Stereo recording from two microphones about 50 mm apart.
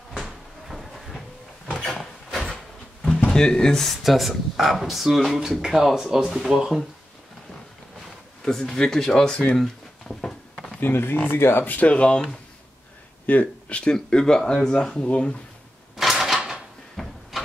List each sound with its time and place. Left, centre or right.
0.2 s cupboard open or close: centre
1.7 s a sound: centre
3.3 s speech: centre
8.5 s speech: centre
9.6 s a sound: centre
10.8 s speech: left
11.7 s speech: left
13.3 s speech: left
16.0 s a sound: centre
16.9 s cupboard open or close: centre